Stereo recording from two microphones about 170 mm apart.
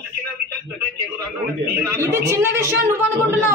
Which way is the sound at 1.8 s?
15° right (ahead or behind).